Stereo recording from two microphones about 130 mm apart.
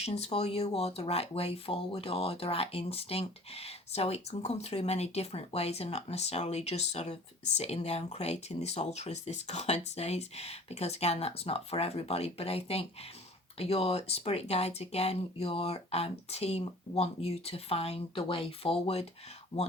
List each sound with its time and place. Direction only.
0.0 s speech: 55° left (ahead or behind)